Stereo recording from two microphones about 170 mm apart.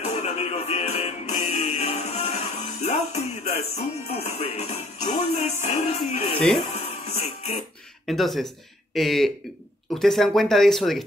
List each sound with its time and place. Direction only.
0.0 s music: 40° left (ahead or behind)
8.1 s speech: centre (ahead or behind)